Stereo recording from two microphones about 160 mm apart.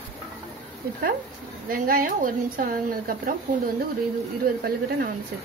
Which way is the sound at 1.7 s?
60° right (ahead or behind).